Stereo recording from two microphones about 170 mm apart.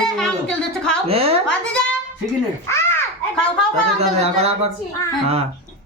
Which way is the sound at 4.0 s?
35° right (ahead or behind).